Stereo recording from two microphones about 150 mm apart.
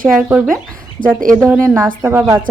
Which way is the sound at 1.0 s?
65° right (ahead or behind).